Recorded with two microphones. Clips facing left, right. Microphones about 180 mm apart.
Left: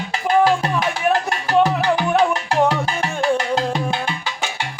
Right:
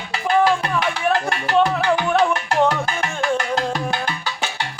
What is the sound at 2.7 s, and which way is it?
Music, 30° left (ahead or behind).